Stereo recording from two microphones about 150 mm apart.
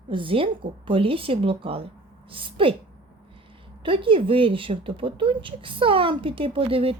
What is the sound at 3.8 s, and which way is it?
A woman's voice, 35° right (ahead or behind).